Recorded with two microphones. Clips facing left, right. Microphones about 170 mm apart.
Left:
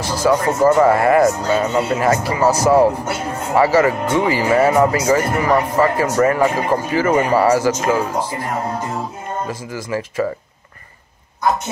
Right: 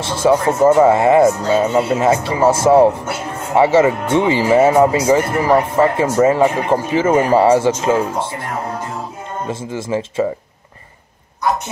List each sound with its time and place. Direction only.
0.0 s speech: 25° right (ahead or behind)
1.2 s speech: 10° right (ahead or behind)
2.0 s speech: 25° right (ahead or behind)
9.5 s speech: 25° right (ahead or behind)